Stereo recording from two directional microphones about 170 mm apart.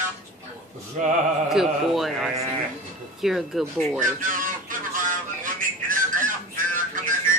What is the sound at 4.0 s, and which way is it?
Speech, 50° right (ahead or behind).